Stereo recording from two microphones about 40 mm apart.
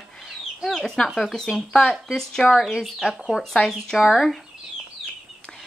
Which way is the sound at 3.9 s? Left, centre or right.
Centre.